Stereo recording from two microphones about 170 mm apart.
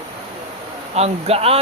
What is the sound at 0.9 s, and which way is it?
Speech, 40° right (ahead or behind).